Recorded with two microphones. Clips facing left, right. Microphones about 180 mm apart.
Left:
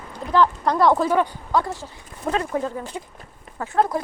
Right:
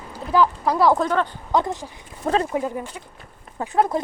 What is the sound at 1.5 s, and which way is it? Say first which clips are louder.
Speech: right 1 dB; 15° right (ahead or behind).